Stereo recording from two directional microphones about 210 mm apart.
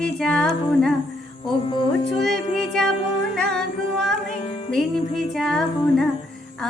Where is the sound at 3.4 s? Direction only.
Centre (ahead or behind).